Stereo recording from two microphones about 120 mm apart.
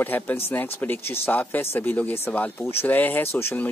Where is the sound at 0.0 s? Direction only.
15° left (ahead or behind).